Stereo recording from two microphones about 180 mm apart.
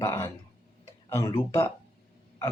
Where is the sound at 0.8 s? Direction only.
15° left (ahead or behind).